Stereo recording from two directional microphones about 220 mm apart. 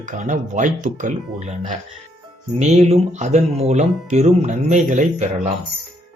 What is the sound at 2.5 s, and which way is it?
Speech, 30° right (ahead or behind).